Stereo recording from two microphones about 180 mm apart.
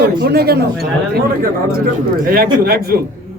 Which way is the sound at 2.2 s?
55° right (ahead or behind).